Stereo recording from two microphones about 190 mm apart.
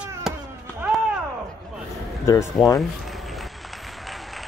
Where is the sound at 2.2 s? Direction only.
15° left (ahead or behind).